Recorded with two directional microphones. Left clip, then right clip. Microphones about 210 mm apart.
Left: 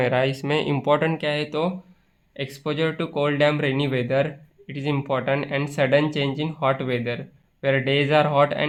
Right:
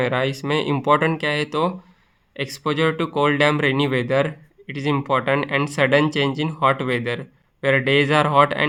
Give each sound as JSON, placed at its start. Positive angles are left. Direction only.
{"t": 0.0, "sound": "speech", "side_deg": -10}